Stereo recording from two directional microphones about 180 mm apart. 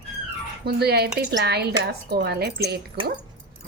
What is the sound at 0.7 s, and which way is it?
A woman's voice, 65° right (ahead or behind).